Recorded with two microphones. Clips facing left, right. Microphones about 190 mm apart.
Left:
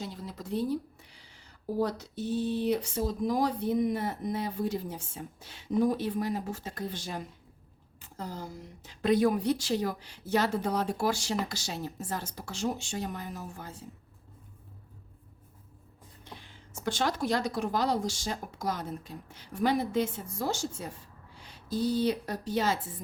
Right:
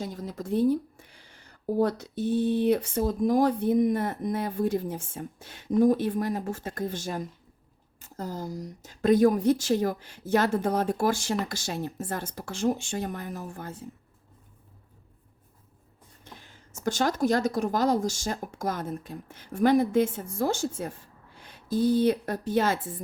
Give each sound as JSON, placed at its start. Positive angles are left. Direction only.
{"t": 0.0, "sound": "speech", "side_deg": -45}
{"t": 16.2, "sound": "speech", "side_deg": -45}